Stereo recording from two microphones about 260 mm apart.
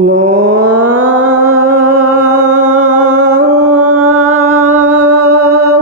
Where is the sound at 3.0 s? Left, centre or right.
Right.